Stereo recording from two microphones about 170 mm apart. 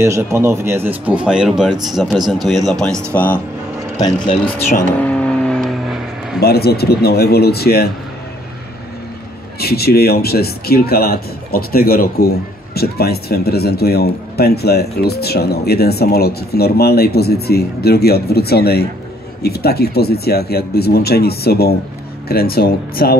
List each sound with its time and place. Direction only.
0.0 s speech: 15° right (ahead or behind); by 3.3 s 10° left (ahead or behind)
4.9 s vehicle: 10° left (ahead or behind)
6.4 s speech: 65° left (ahead or behind)
9.6 s speech: 65° left (ahead or behind)